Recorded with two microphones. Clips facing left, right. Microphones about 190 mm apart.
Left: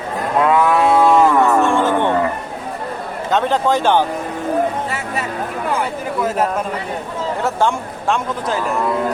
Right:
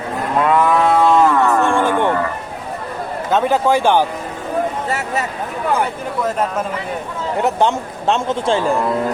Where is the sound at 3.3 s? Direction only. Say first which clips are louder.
Right 1 dB; 10° right (ahead or behind).